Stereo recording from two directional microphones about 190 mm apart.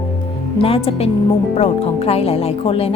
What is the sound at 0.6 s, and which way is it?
A woman's voice, 30° left (ahead or behind).